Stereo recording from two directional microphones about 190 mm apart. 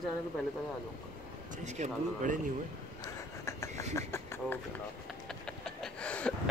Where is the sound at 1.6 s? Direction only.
40° right (ahead or behind).